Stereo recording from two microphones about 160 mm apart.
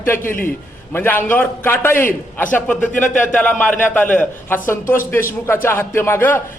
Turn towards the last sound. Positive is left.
turn(degrees=15)  # may be behind; listen again after turning